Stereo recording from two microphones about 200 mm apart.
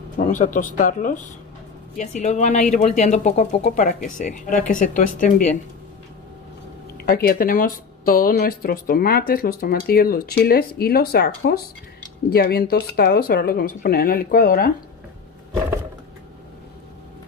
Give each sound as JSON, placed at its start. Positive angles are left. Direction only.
{"t": 0.2, "sound": "speech", "side_deg": 40}
{"t": 7.0, "sound": "speech", "side_deg": 50}